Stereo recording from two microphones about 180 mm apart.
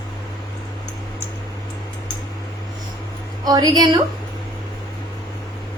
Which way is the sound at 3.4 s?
20° right (ahead or behind).